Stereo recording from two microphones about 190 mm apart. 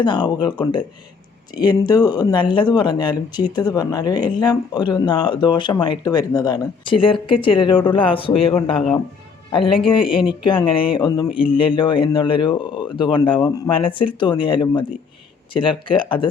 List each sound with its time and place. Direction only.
0.0 s speech: 25° left (ahead or behind)